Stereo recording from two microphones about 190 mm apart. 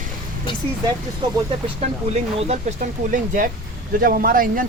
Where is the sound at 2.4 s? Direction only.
35° right (ahead or behind).